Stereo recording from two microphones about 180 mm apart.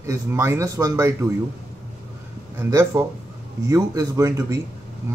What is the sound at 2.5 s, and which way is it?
Speech, 15° right (ahead or behind).